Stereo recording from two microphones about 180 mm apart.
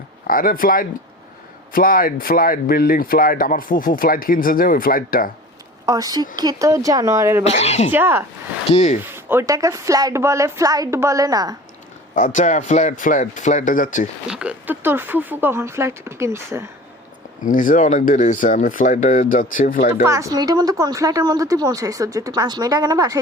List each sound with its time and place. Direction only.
0.3 s speech: 50° left (ahead or behind)
5.8 s a woman's voice: 20° right (ahead or behind)
7.4 s speech: 35° left (ahead or behind)
7.9 s a woman's voice: 10° right (ahead or behind)
8.7 s speech: 40° left (ahead or behind)
9.0 s a woman's voice: 10° right (ahead or behind)
12.1 s speech: 45° left (ahead or behind)
14.3 s a woman's voice: 5° right (ahead or behind)
17.4 s speech: 45° left (ahead or behind)
20.1 s a woman's voice: 20° right (ahead or behind)